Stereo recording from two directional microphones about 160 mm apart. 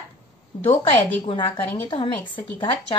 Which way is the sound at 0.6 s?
30° left (ahead or behind).